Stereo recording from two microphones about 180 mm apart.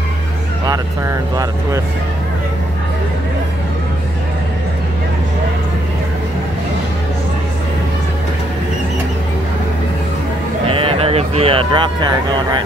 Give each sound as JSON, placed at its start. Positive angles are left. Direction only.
{"t": 1.3, "sound": "speech", "side_deg": -20}
{"t": 10.7, "sound": "speech", "side_deg": -30}